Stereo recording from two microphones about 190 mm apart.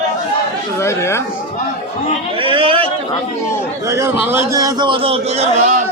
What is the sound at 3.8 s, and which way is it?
A man's voice, 15° right (ahead or behind).